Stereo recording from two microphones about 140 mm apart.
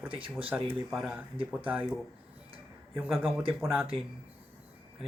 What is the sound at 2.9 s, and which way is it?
Speech, 10° right (ahead or behind).